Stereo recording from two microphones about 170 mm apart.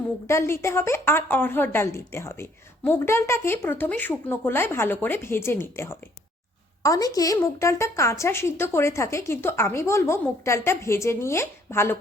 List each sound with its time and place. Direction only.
0.3 s a woman's voice: 15° left (ahead or behind)